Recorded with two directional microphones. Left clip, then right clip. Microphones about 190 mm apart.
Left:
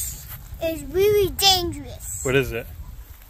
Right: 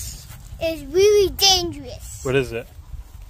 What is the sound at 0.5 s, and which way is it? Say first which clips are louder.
Speech: right 3 dB; 45° right (ahead or behind).